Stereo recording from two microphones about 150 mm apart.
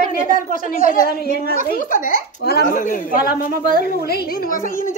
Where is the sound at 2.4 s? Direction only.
75° left (ahead or behind).